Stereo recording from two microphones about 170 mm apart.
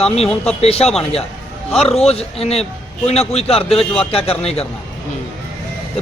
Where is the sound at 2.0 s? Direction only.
35° left (ahead or behind).